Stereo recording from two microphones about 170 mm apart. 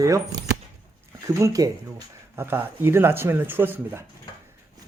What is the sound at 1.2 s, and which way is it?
Speech, 20° right (ahead or behind).